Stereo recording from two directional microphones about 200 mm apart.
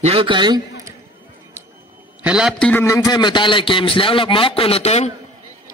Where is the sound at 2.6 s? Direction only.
10° left (ahead or behind); by 5.1 s 30° left (ahead or behind).